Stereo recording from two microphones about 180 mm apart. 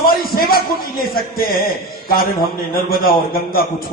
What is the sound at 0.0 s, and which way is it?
A man's voice, 55° left (ahead or behind).